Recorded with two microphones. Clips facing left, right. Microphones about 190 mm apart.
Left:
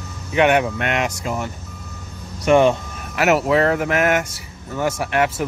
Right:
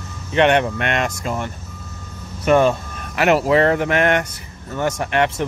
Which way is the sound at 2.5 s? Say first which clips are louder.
Left 1 dB; 15° left (ahead or behind).